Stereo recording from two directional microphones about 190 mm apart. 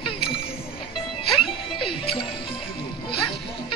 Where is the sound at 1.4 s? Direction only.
30° left (ahead or behind).